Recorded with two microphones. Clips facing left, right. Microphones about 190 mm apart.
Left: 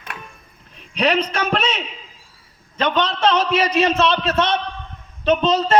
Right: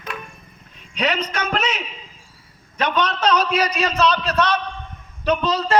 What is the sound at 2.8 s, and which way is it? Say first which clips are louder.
A man's voice: left 2 dB; 25° left (ahead or behind).